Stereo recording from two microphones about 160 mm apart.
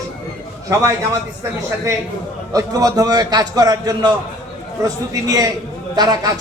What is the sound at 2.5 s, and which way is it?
A man's voice, 20° right (ahead or behind).